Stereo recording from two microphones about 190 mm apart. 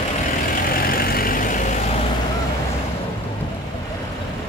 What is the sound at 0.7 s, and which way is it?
Vehicle, 50° left (ahead or behind).